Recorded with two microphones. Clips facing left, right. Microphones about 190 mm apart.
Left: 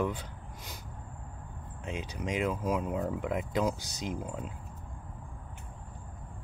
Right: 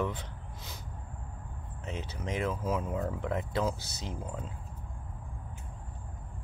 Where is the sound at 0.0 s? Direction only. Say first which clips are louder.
Left 2 dB; 10° left (ahead or behind).